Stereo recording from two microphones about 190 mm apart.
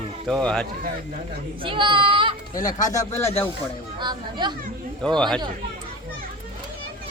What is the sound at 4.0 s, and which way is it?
Speech, 25° right (ahead or behind).